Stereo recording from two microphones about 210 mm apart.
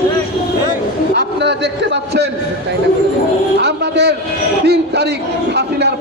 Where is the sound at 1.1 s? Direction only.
55° right (ahead or behind).